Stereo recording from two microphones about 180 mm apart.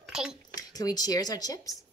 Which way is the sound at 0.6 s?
20° left (ahead or behind).